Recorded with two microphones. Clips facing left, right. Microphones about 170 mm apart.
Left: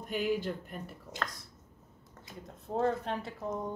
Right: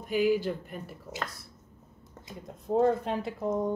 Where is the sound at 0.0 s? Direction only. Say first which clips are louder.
Right 6 dB; 5° right (ahead or behind).